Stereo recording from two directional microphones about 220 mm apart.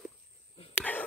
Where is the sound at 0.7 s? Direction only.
5° left (ahead or behind).